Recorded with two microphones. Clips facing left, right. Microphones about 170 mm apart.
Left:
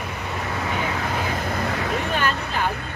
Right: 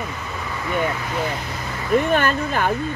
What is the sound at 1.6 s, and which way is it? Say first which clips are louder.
Vehicle: left 5 dB; 65° left (ahead or behind).